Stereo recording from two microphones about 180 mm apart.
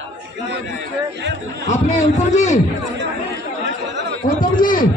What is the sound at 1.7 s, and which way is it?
Speech, 40° left (ahead or behind).